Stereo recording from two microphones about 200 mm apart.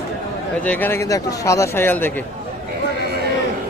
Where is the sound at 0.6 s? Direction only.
10° left (ahead or behind).